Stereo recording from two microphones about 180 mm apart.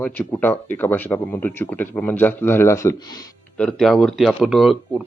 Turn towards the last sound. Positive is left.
turn(degrees=0)  # may be behind; listen again after turning